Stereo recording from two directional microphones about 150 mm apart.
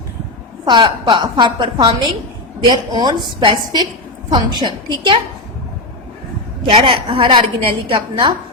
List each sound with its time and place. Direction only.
0.6 s a woman's voice: 30° right (ahead or behind)
6.7 s a woman's voice: 35° right (ahead or behind)